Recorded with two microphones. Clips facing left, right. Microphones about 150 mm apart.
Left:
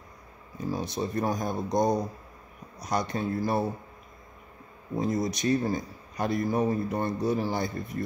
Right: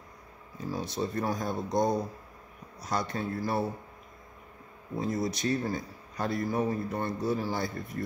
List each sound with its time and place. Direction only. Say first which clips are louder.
0.6 s a man's voice: left 2 dB; 15° left (ahead or behind)
4.9 s a man's voice: left 3 dB; 15° left (ahead or behind)